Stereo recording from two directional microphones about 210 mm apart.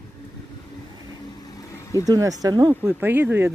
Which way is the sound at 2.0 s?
15° right (ahead or behind).